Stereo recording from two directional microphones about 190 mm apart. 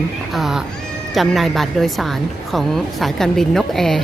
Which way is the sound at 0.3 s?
Centre (ahead or behind).